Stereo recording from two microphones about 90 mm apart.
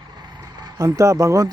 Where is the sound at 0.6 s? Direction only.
40° right (ahead or behind).